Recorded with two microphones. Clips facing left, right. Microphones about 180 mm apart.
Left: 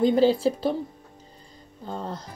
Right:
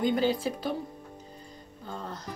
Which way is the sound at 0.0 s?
30° left (ahead or behind).